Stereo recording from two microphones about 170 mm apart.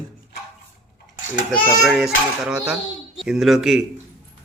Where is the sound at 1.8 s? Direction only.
Centre (ahead or behind).